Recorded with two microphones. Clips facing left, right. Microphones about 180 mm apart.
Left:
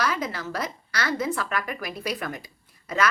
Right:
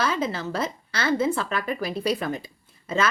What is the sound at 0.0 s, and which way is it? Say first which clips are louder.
A woman's voice: right 2 dB; 25° right (ahead or behind).